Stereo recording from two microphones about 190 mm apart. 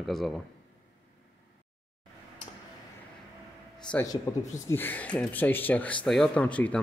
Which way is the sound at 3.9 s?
15° left (ahead or behind).